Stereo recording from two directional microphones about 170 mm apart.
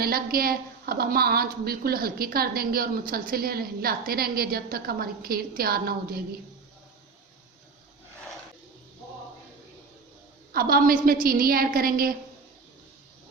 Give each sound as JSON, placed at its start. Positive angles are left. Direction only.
{"t": 0.0, "sound": "a woman's voice", "side_deg": -60}
{"t": 10.5, "sound": "a woman's voice", "side_deg": -60}